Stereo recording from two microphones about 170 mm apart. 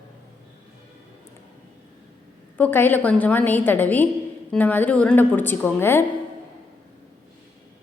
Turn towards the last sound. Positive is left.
turn(degrees=15)  # may be behind; listen again after turning